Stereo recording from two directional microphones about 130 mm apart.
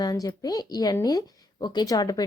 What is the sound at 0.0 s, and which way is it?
A woman's voice, 30° left (ahead or behind).